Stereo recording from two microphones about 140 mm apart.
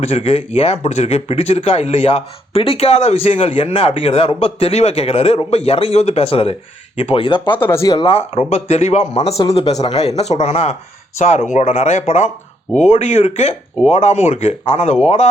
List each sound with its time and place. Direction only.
0.0 s speech: 45° left (ahead or behind)
7.6 s speech: 20° left (ahead or behind)
7.9 s speech: 45° left (ahead or behind)